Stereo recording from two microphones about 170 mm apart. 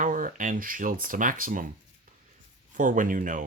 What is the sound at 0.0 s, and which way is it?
Speech, 55° right (ahead or behind).